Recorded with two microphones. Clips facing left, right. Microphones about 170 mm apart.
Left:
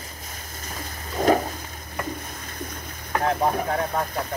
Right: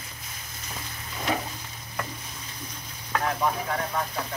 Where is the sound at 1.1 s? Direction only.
45° left (ahead or behind).